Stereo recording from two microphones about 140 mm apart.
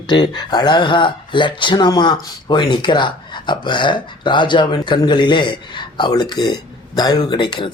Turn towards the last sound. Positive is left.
turn(degrees=35)  # may be behind; listen again after turning